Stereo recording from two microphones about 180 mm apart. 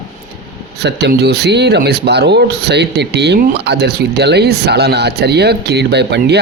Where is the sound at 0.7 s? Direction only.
70° right (ahead or behind).